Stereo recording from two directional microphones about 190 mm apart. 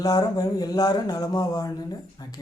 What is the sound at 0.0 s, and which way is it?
Speech, 20° left (ahead or behind).